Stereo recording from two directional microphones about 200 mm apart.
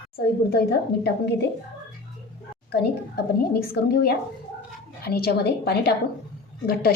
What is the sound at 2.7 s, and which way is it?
A woman's voice, 55° left (ahead or behind).